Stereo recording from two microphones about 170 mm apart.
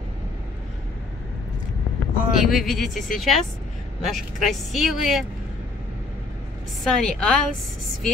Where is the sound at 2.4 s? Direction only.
Centre (ahead or behind).